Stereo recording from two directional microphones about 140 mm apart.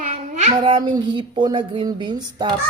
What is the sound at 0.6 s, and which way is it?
Speech, 35° right (ahead or behind).